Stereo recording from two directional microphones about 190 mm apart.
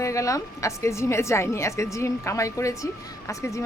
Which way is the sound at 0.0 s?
15° left (ahead or behind).